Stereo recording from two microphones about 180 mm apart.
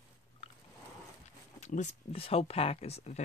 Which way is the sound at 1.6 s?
40° left (ahead or behind).